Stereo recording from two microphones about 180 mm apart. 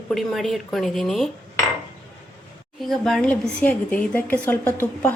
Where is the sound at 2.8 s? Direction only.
Centre (ahead or behind).